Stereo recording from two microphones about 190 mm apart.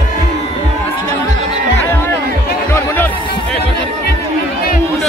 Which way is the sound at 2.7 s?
10° left (ahead or behind).